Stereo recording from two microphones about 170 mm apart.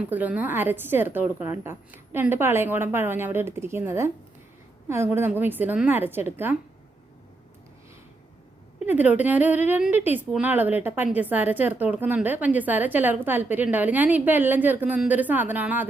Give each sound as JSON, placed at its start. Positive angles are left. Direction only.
{"t": 0.0, "sound": "a woman's voice", "side_deg": -10}
{"t": 8.9, "sound": "a woman's voice", "side_deg": -10}